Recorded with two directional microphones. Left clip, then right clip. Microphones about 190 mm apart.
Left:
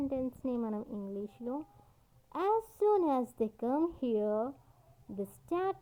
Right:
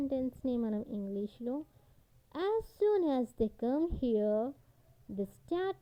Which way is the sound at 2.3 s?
25° right (ahead or behind).